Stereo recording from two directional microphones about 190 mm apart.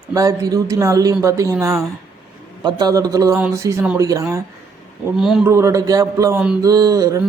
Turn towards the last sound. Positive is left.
turn(degrees=-20)  # may be behind; listen again after turning